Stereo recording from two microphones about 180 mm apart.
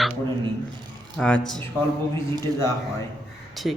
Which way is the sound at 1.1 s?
5° left (ahead or behind).